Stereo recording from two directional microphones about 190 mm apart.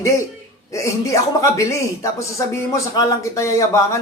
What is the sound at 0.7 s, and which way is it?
A man's voice, 15° left (ahead or behind).